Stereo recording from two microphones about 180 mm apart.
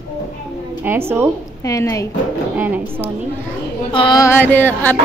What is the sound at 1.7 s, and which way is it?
Speech, 15° left (ahead or behind).